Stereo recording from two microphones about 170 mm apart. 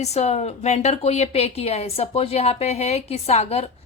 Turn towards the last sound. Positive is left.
turn(degrees=40)  # may be behind; listen again after turning